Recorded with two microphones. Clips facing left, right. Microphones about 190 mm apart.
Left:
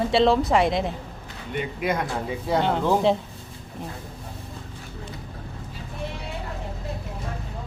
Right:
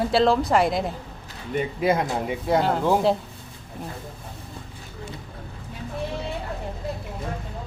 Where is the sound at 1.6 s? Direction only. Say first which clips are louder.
Right 4 dB; 30° right (ahead or behind).